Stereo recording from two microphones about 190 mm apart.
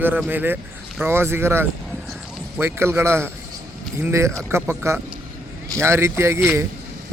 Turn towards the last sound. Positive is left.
turn(degrees=-15)  # may be behind; listen again after turning